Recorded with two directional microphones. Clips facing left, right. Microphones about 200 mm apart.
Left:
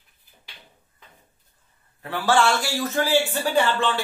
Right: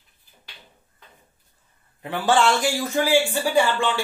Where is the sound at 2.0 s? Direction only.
20° right (ahead or behind).